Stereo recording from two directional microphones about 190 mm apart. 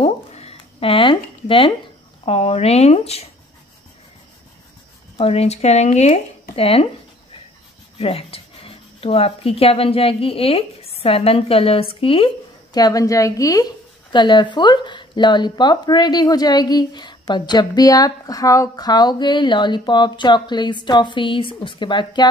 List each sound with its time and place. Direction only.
0.0 s a sound: 30° left (ahead or behind)
2.2 s speech: 30° left (ahead or behind)
5.1 s speech: 30° left (ahead or behind)
8.0 s a woman's voice: 30° left (ahead or behind)